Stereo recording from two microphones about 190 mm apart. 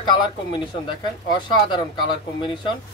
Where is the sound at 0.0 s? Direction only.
25° left (ahead or behind).